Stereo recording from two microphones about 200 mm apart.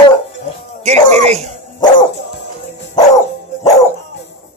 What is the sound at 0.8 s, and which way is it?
Speech, 35° right (ahead or behind).